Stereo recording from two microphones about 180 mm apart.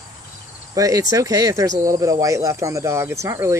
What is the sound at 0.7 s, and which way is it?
Speech, 20° right (ahead or behind).